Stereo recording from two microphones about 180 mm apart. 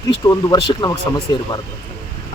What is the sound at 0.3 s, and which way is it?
Speech, 20° left (ahead or behind).